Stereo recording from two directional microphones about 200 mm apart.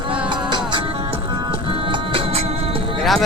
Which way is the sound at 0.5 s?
25° right (ahead or behind).